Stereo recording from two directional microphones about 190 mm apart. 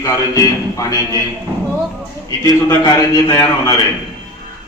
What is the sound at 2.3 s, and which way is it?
A man's voice, 20° left (ahead or behind).